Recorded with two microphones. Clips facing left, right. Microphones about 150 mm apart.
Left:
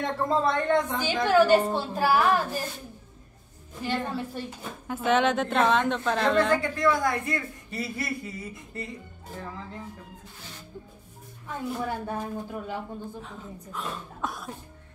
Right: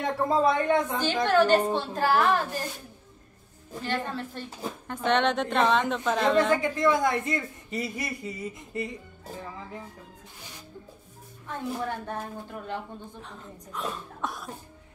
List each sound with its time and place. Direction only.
0.0 s a man's voice: 5° right (ahead or behind)
1.1 s a woman's voice: 10° left (ahead or behind)
3.8 s a woman's voice: 10° left (ahead or behind)
6.6 s a man's voice: 20° right (ahead or behind)
11.4 s a woman's voice: 5° left (ahead or behind)